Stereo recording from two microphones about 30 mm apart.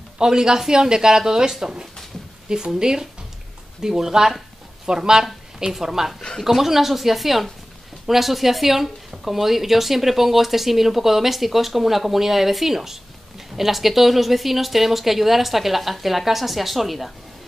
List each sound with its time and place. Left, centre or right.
0.2 s speech: right
5.7 s a woman's voice: centre